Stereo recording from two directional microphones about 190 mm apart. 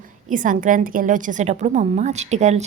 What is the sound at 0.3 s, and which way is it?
A woman's voice, 45° right (ahead or behind).